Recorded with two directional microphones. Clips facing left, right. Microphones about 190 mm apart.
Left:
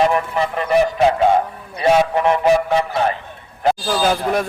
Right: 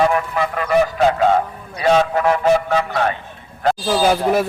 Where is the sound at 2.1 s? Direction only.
20° left (ahead or behind).